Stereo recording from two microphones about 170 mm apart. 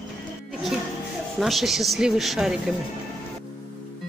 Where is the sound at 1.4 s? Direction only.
Centre (ahead or behind).